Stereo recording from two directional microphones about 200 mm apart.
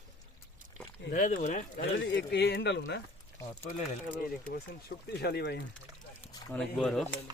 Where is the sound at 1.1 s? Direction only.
40° left (ahead or behind).